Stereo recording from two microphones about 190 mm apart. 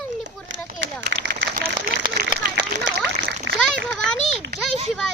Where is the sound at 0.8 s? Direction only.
65° right (ahead or behind).